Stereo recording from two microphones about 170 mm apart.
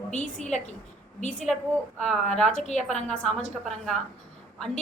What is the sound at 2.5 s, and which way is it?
Speech, 45° left (ahead or behind).